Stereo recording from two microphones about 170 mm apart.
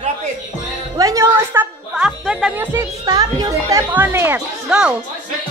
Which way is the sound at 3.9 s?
10° right (ahead or behind).